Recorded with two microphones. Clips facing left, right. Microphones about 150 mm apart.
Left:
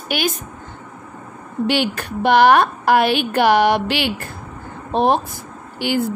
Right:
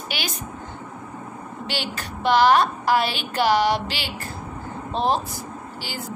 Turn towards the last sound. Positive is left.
turn(degrees=60)  # may be behind; listen again after turning